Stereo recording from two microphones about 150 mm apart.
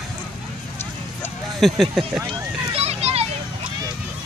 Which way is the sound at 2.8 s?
45° right (ahead or behind).